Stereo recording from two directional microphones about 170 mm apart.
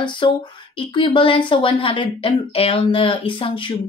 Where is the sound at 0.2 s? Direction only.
30° left (ahead or behind).